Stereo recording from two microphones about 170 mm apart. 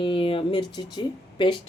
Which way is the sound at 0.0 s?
30° left (ahead or behind).